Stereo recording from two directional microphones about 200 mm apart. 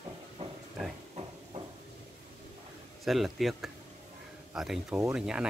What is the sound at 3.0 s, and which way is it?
Speech, centre (ahead or behind).